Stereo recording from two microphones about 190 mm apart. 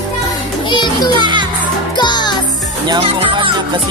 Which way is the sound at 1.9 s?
25° left (ahead or behind).